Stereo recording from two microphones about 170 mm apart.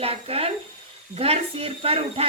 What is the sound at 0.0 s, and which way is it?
A woman's voice, 35° right (ahead or behind).